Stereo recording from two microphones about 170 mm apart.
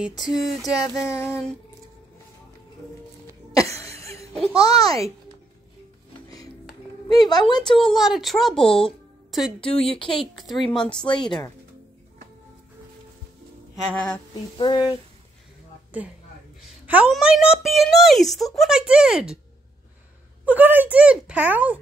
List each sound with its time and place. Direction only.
0.7 s a sound: 20° left (ahead or behind)
3.5 s a sound: 20° left (ahead or behind)
4.3 s a child's voice: 5° left (ahead or behind)
4.6 s speech: 20° left (ahead or behind)
6.2 s music: 20° left (ahead or behind)
7.1 s speech: 25° left (ahead or behind)
7.8 s a woman's voice: centre (ahead or behind)
9.7 s speech: 35° left (ahead or behind)
10.3 s a woman's voice: centre (ahead or behind)
11.0 s speech: 25° left (ahead or behind)
14.6 s speech: 25° left (ahead or behind)
16.8 s a woman's voice: 5° right (ahead or behind)
20.4 s speech: 10° right (ahead or behind)